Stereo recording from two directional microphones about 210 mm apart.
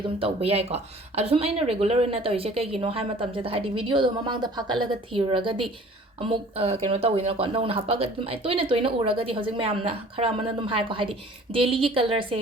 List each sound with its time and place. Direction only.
0.2 s speech: 30° right (ahead or behind)